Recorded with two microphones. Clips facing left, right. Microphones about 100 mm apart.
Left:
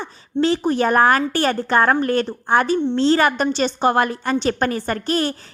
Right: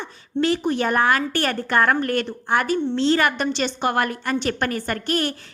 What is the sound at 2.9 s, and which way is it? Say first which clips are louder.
A woman's voice: left 3 dB; 35° left (ahead or behind).